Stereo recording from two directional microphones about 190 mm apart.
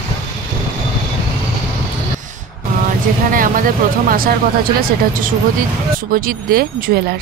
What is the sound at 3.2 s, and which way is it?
Speech, 45° right (ahead or behind).